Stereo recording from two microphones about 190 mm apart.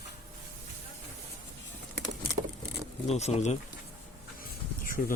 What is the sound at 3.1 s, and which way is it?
Speech, 35° left (ahead or behind).